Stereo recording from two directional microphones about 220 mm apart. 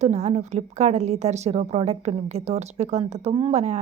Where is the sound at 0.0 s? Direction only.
30° right (ahead or behind).